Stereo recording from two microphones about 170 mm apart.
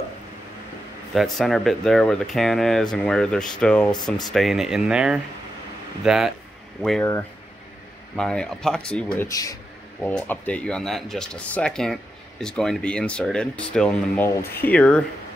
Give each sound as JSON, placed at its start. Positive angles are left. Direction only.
{"t": 1.1, "sound": "speech", "side_deg": 0}
{"t": 3.9, "sound": "speech", "side_deg": 25}
{"t": 4.3, "sound": "speech", "side_deg": 0}
{"t": 9.3, "sound": "speech", "side_deg": 20}
{"t": 10.0, "sound": "speech", "side_deg": 10}